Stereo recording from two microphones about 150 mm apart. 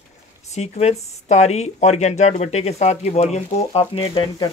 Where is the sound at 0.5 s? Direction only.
45° left (ahead or behind).